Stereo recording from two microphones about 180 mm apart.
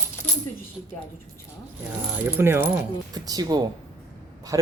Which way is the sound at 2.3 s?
10° right (ahead or behind).